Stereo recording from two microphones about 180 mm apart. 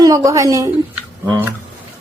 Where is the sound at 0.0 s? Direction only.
20° right (ahead or behind).